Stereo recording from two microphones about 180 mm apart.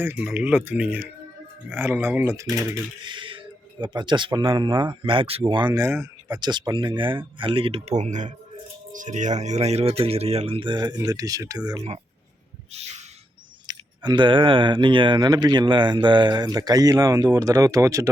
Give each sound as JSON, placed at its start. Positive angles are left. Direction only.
{"t": 0.0, "sound": "speech", "side_deg": -10}
{"t": 12.7, "sound": "a sound", "side_deg": -40}
{"t": 13.7, "sound": "speech", "side_deg": -25}